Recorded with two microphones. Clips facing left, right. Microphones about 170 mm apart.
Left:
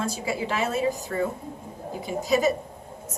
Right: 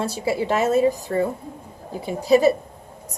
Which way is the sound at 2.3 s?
35° right (ahead or behind).